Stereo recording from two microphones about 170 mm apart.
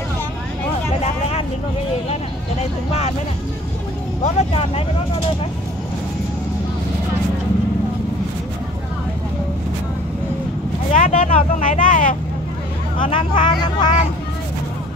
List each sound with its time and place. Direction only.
4.2 s speech: 40° left (ahead or behind)
10.9 s vehicle: 45° left (ahead or behind)
13.1 s speech: 30° left (ahead or behind)